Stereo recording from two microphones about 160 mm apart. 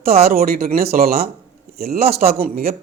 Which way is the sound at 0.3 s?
70° right (ahead or behind).